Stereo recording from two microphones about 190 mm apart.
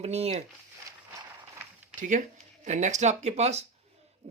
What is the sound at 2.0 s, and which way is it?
Speech, 40° right (ahead or behind).